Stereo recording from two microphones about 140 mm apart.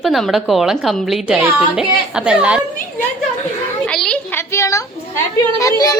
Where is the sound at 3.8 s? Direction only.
5° left (ahead or behind).